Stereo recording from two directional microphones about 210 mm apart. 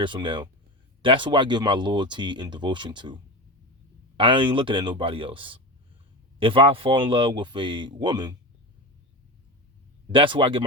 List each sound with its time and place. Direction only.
0.0 s speech: 25° right (ahead or behind)
4.2 s speech: 25° right (ahead or behind)
10.1 s speech: 25° right (ahead or behind)